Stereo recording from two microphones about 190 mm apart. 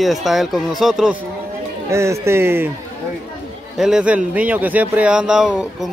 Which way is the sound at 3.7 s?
5° right (ahead or behind).